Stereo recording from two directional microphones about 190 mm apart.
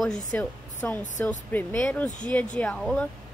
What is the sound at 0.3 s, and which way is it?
Speech, 5° left (ahead or behind).